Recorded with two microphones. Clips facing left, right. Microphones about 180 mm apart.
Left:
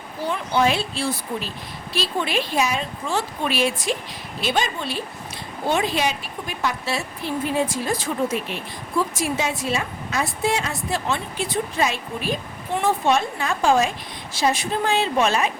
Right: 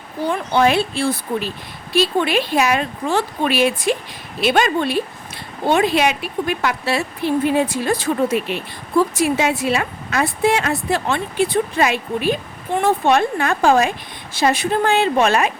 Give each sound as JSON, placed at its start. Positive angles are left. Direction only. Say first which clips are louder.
{"t": 0.3, "sound": "a woman's voice", "louder": "right 4 dB", "side_deg": -60}